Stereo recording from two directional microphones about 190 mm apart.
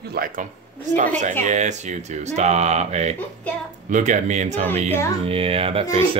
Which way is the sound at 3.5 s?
5° left (ahead or behind).